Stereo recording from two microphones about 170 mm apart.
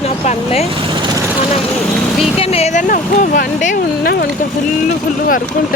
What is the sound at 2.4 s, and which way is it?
Speech, 40° left (ahead or behind).